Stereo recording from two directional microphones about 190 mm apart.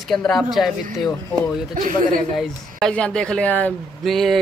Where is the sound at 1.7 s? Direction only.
45° right (ahead or behind).